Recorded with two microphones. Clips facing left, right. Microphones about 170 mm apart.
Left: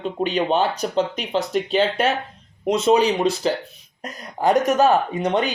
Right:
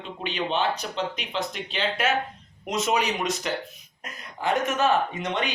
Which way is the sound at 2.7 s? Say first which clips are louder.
Left 8 dB; 30° left (ahead or behind).